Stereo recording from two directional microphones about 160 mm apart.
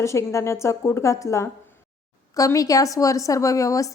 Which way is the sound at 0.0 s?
20° left (ahead or behind).